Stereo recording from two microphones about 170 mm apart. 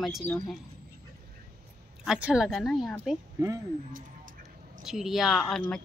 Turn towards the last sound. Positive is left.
turn(degrees=5)  # may be behind; listen again after turning